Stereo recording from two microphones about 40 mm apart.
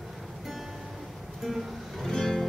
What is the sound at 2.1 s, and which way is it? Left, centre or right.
Music, centre.